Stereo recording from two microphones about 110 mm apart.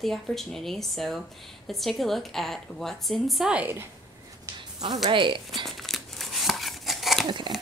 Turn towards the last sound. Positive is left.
turn(degrees=-45)  # may be behind; listen again after turning